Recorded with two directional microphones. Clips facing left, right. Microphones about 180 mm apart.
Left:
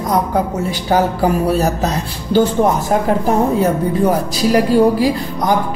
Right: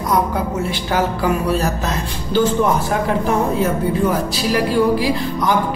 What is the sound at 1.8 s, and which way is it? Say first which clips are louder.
Speech: left 4 dB; 40° left (ahead or behind).